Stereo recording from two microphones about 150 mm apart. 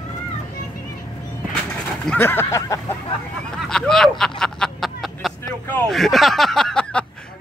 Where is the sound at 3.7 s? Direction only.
5° left (ahead or behind).